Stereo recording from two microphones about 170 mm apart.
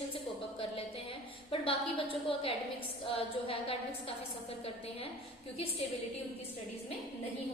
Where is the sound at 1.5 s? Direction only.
30° left (ahead or behind).